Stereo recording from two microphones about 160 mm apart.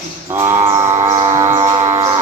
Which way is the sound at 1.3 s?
15° right (ahead or behind).